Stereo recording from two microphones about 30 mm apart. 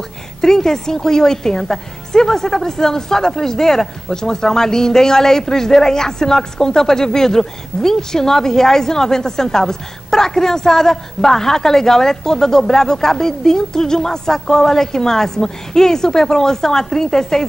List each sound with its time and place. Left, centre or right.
0.4 s a woman's voice: centre